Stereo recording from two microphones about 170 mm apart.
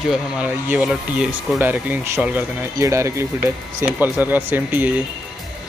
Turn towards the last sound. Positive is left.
turn(degrees=-10)  # may be behind; listen again after turning